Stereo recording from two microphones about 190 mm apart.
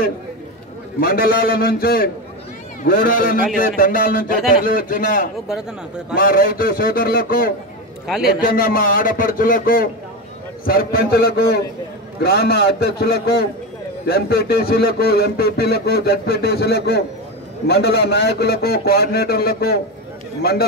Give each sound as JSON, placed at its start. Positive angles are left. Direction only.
{"t": 1.0, "sound": "a man's voice", "side_deg": 50}
{"t": 5.5, "sound": "speech", "side_deg": -5}
{"t": 6.1, "sound": "a man's voice", "side_deg": 50}